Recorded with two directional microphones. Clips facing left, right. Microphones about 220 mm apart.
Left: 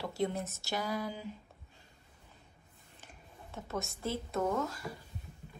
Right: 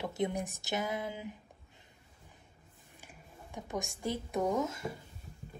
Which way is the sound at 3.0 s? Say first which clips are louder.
Right 1 dB; 10° right (ahead or behind).